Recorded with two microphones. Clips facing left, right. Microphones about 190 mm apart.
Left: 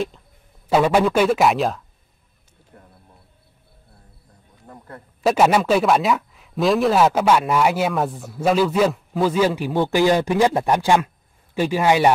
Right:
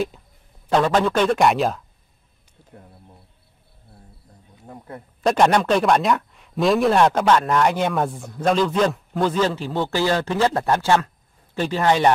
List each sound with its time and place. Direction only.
0.7 s a man's voice: 10° left (ahead or behind)
4.6 s a sound: 15° right (ahead or behind)
5.2 s a man's voice: 5° left (ahead or behind)